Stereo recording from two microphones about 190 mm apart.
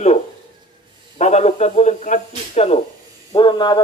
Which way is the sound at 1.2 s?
35° left (ahead or behind).